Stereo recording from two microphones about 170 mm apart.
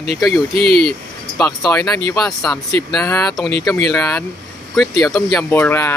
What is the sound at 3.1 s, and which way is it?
Speech, 20° left (ahead or behind).